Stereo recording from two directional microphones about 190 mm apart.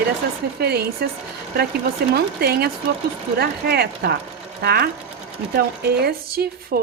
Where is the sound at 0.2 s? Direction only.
50° right (ahead or behind).